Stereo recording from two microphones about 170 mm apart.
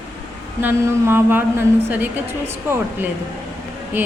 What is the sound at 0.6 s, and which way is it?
A woman's voice, 10° right (ahead or behind).